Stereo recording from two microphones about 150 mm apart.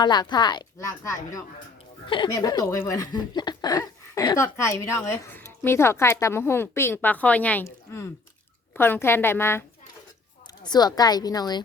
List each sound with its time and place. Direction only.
0.0 s speech: 30° left (ahead or behind)
2.0 s a woman's voice: 30° left (ahead or behind); by 9.6 s 15° left (ahead or behind)
10.6 s speech: 25° left (ahead or behind)